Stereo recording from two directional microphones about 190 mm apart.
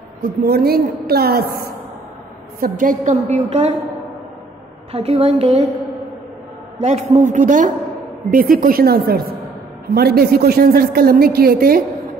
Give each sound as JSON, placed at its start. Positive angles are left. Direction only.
{"t": 0.2, "sound": "a woman's voice", "side_deg": -55}
{"t": 4.9, "sound": "a woman's voice", "side_deg": -35}
{"t": 6.8, "sound": "a woman's voice", "side_deg": -35}